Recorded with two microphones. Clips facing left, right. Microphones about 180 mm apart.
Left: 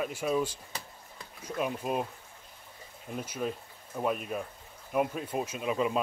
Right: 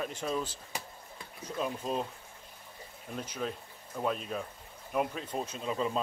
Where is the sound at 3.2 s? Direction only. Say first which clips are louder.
Left 2 dB; 10° left (ahead or behind).